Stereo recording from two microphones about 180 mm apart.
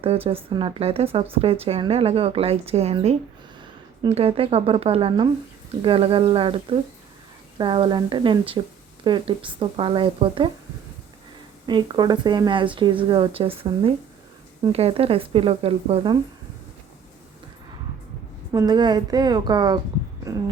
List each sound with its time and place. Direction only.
0.0 s a woman's voice: 30° right (ahead or behind)
11.6 s a woman's voice: 25° right (ahead or behind)
18.5 s a woman's voice: 20° right (ahead or behind)